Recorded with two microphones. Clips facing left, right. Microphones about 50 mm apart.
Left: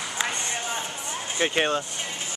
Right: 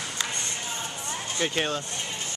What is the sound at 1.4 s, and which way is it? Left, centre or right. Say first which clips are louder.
Speech: left 4 dB; left.